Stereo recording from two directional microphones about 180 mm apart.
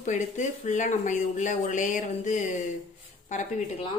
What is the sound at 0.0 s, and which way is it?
Speech, 40° left (ahead or behind).